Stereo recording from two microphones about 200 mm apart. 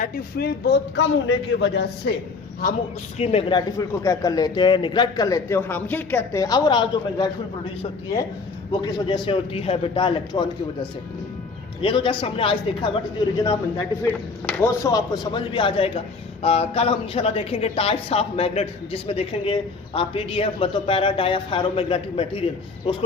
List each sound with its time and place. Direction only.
0.0 s a man's voice: 50° left (ahead or behind)
3.2 s a woman's voice: 30° left (ahead or behind)
3.8 s a man's voice: 15° left (ahead or behind)
8.7 s a woman's voice: 20° left (ahead or behind)
11.8 s a woman's voice: 25° left (ahead or behind)